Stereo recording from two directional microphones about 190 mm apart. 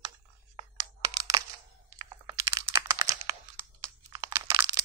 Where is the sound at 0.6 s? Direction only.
20° right (ahead or behind).